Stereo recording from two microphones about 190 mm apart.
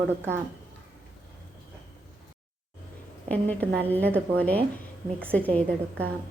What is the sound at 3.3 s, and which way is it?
Speech, 10° left (ahead or behind).